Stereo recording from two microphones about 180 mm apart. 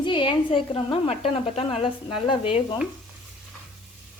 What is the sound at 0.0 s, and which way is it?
A woman's voice, 25° left (ahead or behind).